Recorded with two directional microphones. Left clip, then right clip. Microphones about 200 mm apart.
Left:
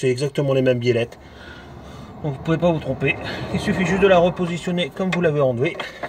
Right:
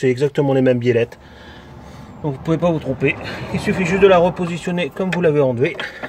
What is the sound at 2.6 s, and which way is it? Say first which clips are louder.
Speech: right 1 dB; 10° right (ahead or behind).